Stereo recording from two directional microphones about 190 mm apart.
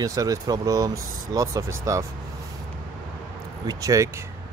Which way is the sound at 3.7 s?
20° right (ahead or behind).